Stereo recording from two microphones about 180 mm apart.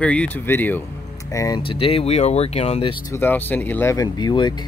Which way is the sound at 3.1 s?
10° left (ahead or behind).